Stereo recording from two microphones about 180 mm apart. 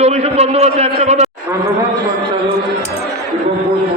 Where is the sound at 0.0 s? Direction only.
35° right (ahead or behind).